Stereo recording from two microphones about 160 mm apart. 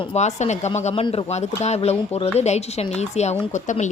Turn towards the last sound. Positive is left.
turn(degrees=50)  # may be behind; listen again after turning